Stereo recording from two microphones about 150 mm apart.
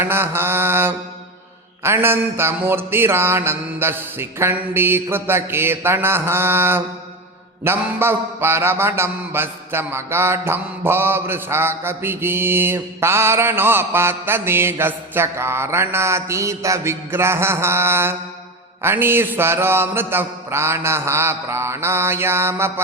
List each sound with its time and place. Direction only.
0.0 s mantra: 15° right (ahead or behind)